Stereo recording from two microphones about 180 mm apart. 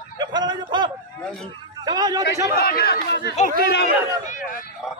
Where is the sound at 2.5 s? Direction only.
60° left (ahead or behind).